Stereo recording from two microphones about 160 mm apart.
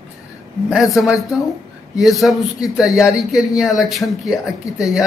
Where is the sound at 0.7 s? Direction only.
Centre (ahead or behind).